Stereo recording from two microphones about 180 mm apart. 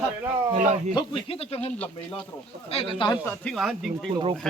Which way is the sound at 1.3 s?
35° left (ahead or behind).